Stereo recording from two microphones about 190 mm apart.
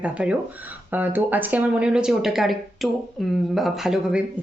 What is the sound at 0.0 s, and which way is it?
Speech, 5° right (ahead or behind).